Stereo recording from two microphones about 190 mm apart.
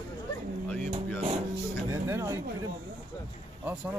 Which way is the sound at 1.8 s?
15° right (ahead or behind).